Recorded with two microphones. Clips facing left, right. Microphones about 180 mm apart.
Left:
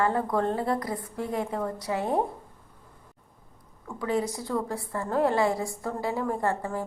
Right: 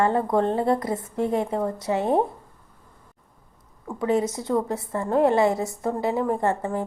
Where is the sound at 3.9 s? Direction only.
25° right (ahead or behind).